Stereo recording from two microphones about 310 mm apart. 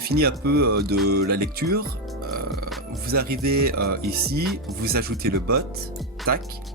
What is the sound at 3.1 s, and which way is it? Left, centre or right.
Speech, right.